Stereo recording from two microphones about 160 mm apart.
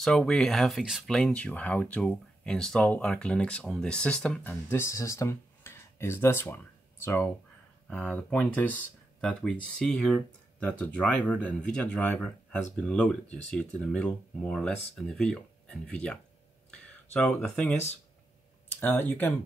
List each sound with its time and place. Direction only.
0.0 s speech: centre (ahead or behind)